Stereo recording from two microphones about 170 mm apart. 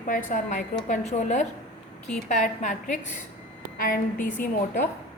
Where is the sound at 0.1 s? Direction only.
50° left (ahead or behind).